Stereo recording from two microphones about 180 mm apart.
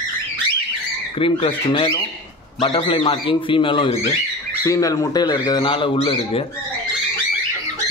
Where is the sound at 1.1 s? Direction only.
30° left (ahead or behind).